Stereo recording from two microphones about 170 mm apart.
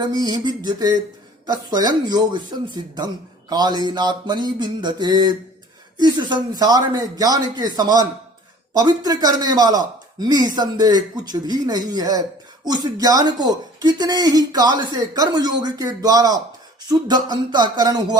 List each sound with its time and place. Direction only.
0.0 s speech: 25° right (ahead or behind)